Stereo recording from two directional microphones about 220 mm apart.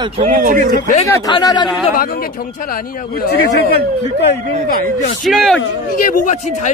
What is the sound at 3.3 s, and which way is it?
Speech, 45° left (ahead or behind).